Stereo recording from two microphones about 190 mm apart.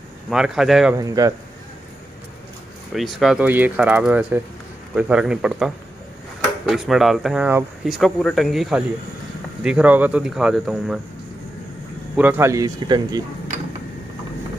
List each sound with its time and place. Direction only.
0.3 s speech: 5° right (ahead or behind)
0.9 s speech: 20° right (ahead or behind)
2.9 s speech: centre (ahead or behind)
12.2 s speech: 10° right (ahead or behind)